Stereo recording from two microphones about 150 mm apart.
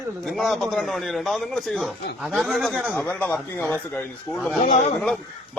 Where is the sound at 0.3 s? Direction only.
Centre (ahead or behind).